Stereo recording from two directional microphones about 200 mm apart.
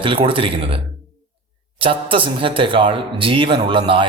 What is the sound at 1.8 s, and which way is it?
A man's voice, 25° right (ahead or behind).